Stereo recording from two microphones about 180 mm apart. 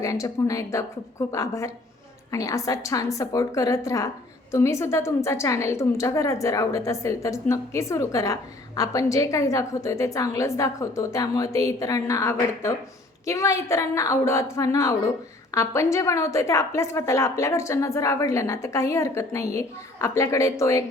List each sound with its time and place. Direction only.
0.0 s a woman's voice: 20° left (ahead or behind)